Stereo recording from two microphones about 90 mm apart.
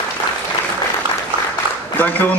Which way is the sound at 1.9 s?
20° left (ahead or behind).